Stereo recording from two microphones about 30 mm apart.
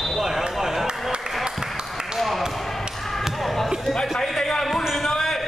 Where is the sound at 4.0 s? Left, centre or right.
Centre.